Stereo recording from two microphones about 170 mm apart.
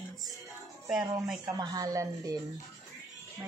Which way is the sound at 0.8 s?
5° right (ahead or behind).